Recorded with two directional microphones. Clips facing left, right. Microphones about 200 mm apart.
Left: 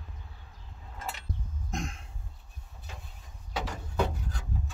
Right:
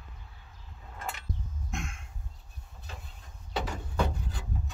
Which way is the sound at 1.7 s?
40° left (ahead or behind).